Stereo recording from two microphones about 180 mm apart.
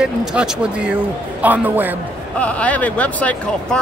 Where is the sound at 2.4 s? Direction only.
5° left (ahead or behind).